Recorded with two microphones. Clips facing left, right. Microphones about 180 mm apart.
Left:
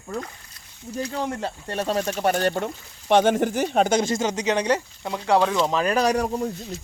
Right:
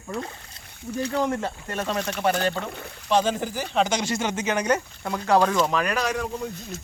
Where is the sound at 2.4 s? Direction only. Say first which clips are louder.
Left 3 dB; 60° left (ahead or behind).